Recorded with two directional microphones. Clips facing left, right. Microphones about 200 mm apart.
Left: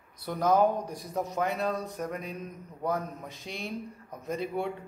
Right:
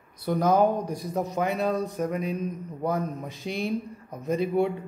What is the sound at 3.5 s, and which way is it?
A man's voice, 5° right (ahead or behind).